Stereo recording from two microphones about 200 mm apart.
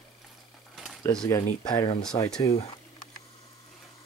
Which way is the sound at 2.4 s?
30° left (ahead or behind).